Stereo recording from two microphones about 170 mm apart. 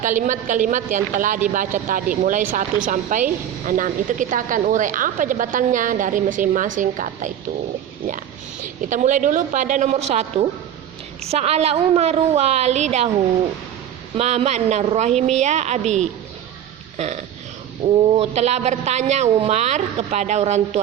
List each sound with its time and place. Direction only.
0.0 s speech: 50° right (ahead or behind)
8.6 s a woman's voice: 50° right (ahead or behind)
14.2 s a woman's voice: 40° right (ahead or behind)
17.0 s a woman's voice: 40° right (ahead or behind)